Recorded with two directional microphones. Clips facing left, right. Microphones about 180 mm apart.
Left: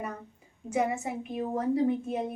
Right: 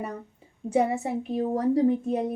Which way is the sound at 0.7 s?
35° right (ahead or behind).